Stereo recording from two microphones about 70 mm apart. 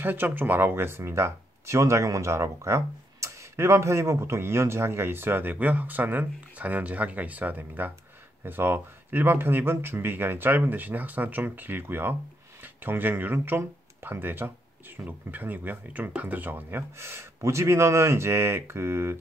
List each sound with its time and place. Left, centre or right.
0.0 s speech: right